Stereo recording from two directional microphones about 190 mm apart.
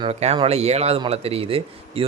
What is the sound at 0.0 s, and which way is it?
Speech, 35° right (ahead or behind).